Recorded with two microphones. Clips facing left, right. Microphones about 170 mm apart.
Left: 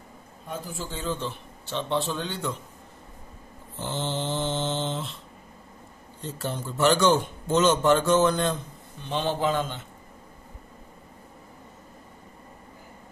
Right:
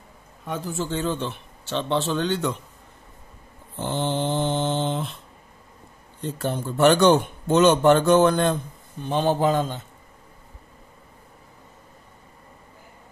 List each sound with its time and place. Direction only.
0.5 s a man's voice: 75° right (ahead or behind)
3.8 s mantra: 55° right (ahead or behind)
6.2 s a man's voice: 55° right (ahead or behind)